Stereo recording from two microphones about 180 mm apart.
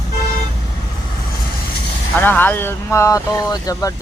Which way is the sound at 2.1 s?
10° left (ahead or behind).